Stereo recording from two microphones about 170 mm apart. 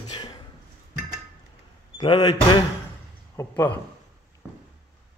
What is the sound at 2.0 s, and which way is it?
Speech, 25° left (ahead or behind).